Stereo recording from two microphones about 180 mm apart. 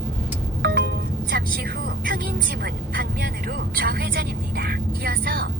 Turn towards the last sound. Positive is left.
turn(degrees=-55)  # may be behind; listen again after turning